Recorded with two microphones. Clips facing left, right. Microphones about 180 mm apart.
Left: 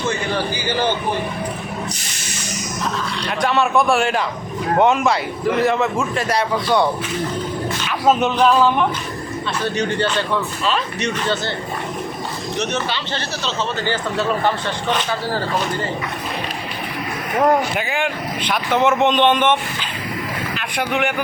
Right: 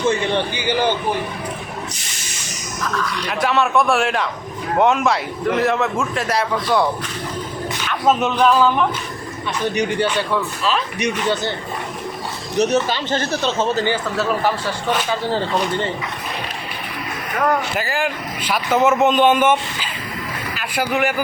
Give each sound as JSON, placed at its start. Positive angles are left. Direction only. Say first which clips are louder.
{"t": 0.1, "sound": "a man's voice", "louder": "right 2 dB", "side_deg": -30}
{"t": 2.9, "sound": "speech", "louder": "right 2 dB", "side_deg": 25}
{"t": 3.2, "sound": "speech", "louder": "left 1 dB", "side_deg": 0}
{"t": 7.9, "sound": "music", "louder": "left 1 dB", "side_deg": 0}
{"t": 9.6, "sound": "a man's voice", "louder": "right 2 dB", "side_deg": -15}
{"t": 12.5, "sound": "speech", "louder": "right 7 dB", "side_deg": -40}
{"t": 14.2, "sound": "speech", "louder": "left 2 dB", "side_deg": -5}
{"t": 15.3, "sound": "a man's voice", "louder": "right 2 dB", "side_deg": -20}
{"t": 17.3, "sound": "speech", "louder": "left 3 dB", "side_deg": 25}
{"t": 17.7, "sound": "speech", "louder": "even", "side_deg": 0}